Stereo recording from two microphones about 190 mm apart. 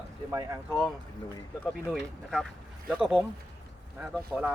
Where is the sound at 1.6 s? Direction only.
Centre (ahead or behind).